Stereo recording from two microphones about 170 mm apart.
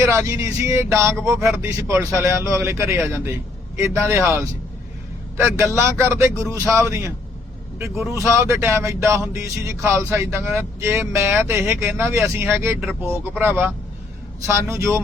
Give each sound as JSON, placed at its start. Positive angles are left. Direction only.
{"t": 0.0, "sound": "speech", "side_deg": -15}
{"t": 5.7, "sound": "speech", "side_deg": -15}
{"t": 8.1, "sound": "speech", "side_deg": -15}